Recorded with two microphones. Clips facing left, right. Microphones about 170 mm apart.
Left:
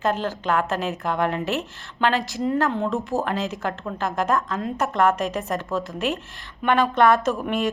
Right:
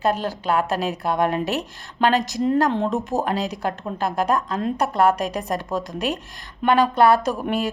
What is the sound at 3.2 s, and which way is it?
Speech, 35° right (ahead or behind).